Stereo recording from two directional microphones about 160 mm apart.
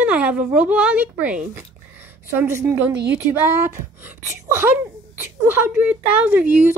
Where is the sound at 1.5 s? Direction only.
15° right (ahead or behind).